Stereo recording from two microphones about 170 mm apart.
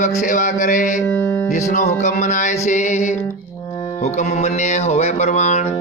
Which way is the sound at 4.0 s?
40° left (ahead or behind).